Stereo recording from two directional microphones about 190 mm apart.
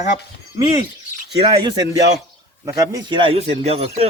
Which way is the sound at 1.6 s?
25° right (ahead or behind).